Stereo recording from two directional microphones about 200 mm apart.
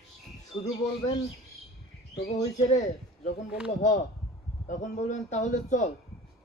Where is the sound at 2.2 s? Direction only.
35° left (ahead or behind).